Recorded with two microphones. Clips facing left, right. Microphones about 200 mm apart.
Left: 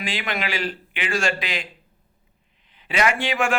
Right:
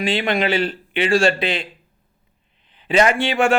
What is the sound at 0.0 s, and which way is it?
A man's voice, 30° right (ahead or behind).